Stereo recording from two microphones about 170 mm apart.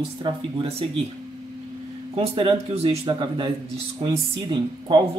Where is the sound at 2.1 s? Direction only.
35° right (ahead or behind).